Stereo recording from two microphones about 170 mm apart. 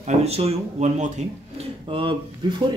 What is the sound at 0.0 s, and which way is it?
A man's voice, 40° right (ahead or behind).